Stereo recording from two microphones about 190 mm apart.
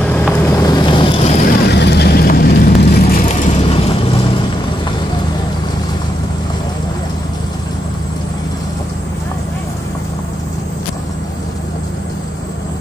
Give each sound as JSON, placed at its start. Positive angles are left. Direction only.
{"t": 0.0, "sound": "boat", "side_deg": 5}
{"t": 1.4, "sound": "vehicle", "side_deg": 60}
{"t": 3.3, "sound": "vehicle", "side_deg": 35}